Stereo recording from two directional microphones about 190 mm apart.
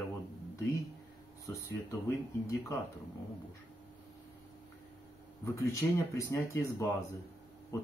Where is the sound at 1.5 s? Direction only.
15° left (ahead or behind).